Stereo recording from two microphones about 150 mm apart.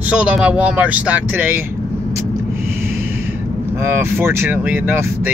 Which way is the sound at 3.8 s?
15° right (ahead or behind).